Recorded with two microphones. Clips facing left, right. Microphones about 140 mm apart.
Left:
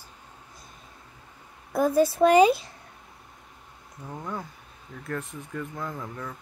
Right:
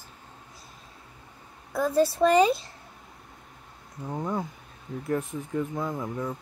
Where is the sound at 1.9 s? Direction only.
Centre (ahead or behind).